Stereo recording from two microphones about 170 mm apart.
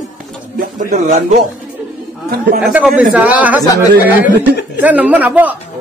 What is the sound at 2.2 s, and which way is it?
Speech, 60° right (ahead or behind).